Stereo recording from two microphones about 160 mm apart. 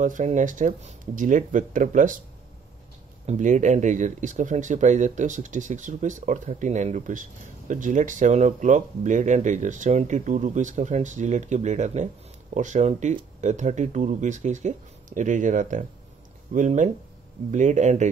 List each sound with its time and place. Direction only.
0.0 s speech: 50° right (ahead or behind)
3.3 s speech: 50° right (ahead or behind)